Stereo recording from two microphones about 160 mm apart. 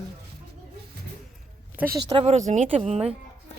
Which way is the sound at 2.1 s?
40° right (ahead or behind).